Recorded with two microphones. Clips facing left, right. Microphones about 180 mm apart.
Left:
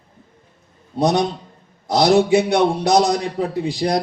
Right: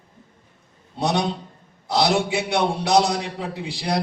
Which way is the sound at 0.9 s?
45° left (ahead or behind).